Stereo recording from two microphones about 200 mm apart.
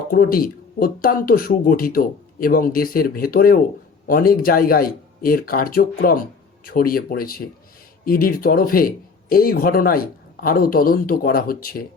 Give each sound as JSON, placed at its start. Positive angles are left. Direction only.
{"t": 0.1, "sound": "speech", "side_deg": 45}